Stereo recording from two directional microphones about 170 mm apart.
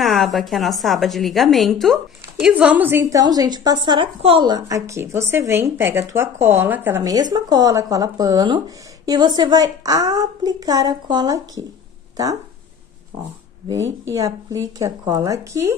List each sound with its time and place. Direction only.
0.0 s a woman's voice: centre (ahead or behind); by 11.4 s 25° right (ahead or behind)
14.1 s speech: 20° right (ahead or behind)